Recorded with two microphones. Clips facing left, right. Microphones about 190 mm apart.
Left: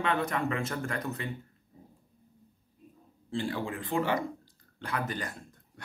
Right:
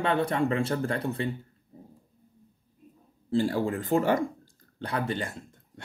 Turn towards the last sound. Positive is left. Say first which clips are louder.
# right 4 dB
turn(degrees=-25)  # may be behind; listen again after turning